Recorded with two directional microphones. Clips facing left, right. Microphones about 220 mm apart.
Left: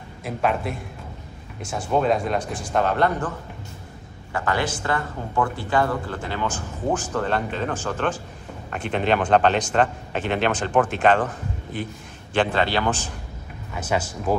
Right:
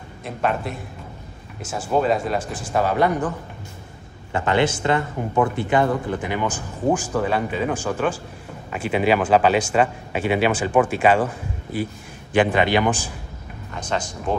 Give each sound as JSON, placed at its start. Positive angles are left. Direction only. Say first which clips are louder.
{"t": 0.2, "sound": "speech", "louder": "even", "side_deg": 0}
{"t": 4.3, "sound": "a man's voice", "louder": "right 5 dB", "side_deg": -25}
{"t": 13.7, "sound": "speech", "louder": "left 1 dB", "side_deg": 5}